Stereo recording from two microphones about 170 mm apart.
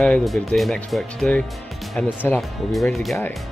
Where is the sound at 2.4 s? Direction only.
Centre (ahead or behind).